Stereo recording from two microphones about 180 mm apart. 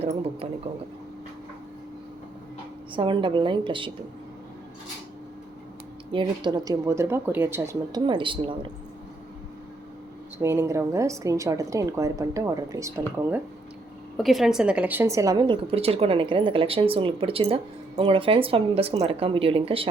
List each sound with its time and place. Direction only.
2.9 s a woman's voice: 25° right (ahead or behind)
6.1 s a woman's voice: 25° right (ahead or behind)
10.3 s a woman's voice: 15° right (ahead or behind)
14.2 s a woman's voice: centre (ahead or behind); by 19.9 s 30° right (ahead or behind)